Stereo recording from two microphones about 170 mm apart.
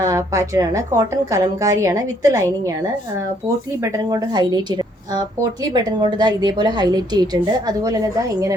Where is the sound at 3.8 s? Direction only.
20° right (ahead or behind).